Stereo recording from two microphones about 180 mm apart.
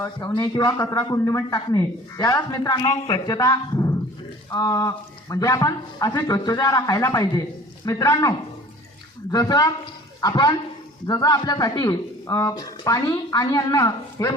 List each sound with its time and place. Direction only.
0.0 s a man's voice: 15° left (ahead or behind)